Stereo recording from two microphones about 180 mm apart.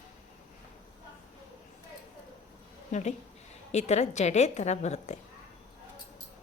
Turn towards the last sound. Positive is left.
turn(degrees=40)  # may be behind; listen again after turning